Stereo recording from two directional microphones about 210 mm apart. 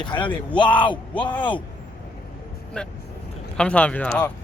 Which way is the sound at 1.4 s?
25° left (ahead or behind).